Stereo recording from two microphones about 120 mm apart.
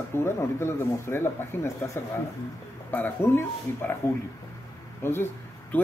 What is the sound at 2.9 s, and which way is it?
Speech, 15° left (ahead or behind).